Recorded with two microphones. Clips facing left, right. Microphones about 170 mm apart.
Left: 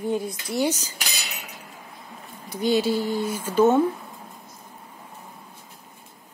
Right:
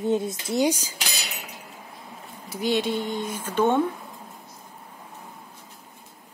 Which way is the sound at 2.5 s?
Centre (ahead or behind).